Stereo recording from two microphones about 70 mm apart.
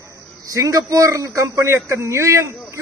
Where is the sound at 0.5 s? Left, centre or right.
Right.